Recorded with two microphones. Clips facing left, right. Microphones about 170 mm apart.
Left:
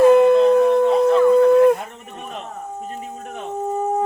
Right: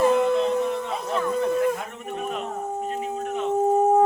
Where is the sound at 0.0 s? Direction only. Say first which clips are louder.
Left 8 dB; 60° left (ahead or behind).